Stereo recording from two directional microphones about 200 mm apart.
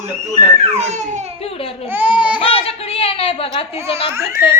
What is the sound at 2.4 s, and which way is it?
A woman's voice, 30° left (ahead or behind).